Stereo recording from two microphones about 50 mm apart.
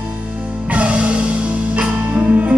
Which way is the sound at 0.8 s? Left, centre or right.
Right.